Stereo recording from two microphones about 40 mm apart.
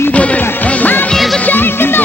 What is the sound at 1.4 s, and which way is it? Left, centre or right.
Quack, left.